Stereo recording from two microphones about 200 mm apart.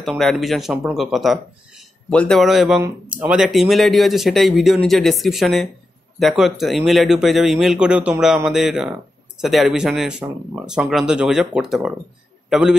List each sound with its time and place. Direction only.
0.2 s a man's voice: centre (ahead or behind)